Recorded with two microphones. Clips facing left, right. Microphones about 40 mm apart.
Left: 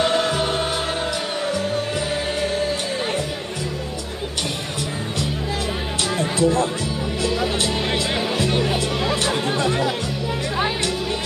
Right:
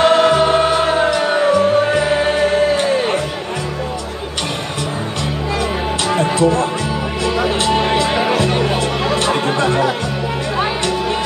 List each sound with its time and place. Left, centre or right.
0.0 s music: right
6.0 s music: right
8.5 s music: right
8.7 s music: right